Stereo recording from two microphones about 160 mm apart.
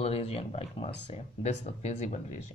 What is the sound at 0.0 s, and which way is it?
Speech, 40° left (ahead or behind).